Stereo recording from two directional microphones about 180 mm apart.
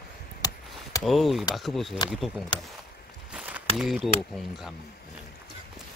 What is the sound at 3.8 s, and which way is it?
Speech, 5° right (ahead or behind).